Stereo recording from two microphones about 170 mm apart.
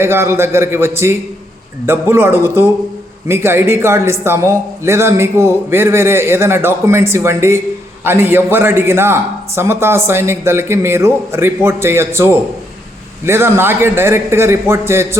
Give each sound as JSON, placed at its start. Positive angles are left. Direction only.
{"t": 0.0, "sound": "a man's voice", "side_deg": -15}